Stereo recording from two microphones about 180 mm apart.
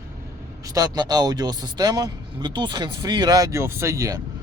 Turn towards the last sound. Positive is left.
turn(degrees=-20)  # may be behind; listen again after turning